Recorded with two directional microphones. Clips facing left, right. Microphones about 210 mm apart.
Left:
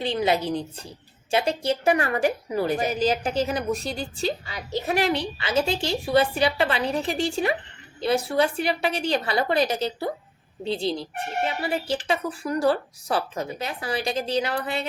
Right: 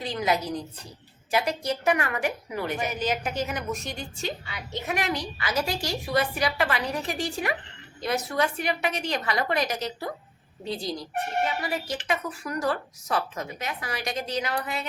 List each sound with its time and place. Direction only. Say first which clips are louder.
0.0 s a woman's voice: left 4 dB; 30° left (ahead or behind)